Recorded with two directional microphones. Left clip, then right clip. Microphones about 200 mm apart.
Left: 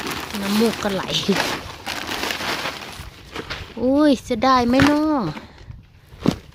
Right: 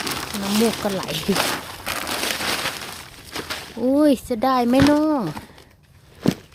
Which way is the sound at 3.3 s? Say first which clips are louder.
Right 1 dB; 45° right (ahead or behind).